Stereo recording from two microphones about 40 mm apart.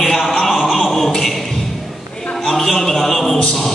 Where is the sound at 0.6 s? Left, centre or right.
Centre.